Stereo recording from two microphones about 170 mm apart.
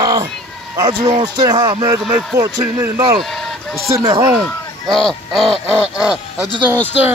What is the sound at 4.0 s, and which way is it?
Speech, 20° right (ahead or behind).